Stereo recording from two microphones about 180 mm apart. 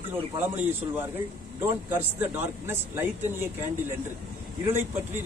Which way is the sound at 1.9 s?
10° right (ahead or behind).